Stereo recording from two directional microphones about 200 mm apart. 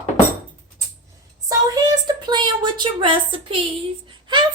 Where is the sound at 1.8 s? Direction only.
20° right (ahead or behind).